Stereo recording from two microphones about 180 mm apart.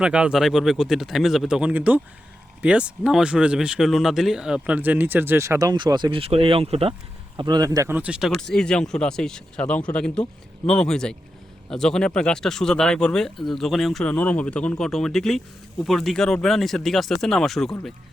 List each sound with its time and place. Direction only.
0.0 s speech: 5° right (ahead or behind); by 6.9 s 35° right (ahead or behind)
7.3 s speech: 20° right (ahead or behind); by 17.9 s centre (ahead or behind)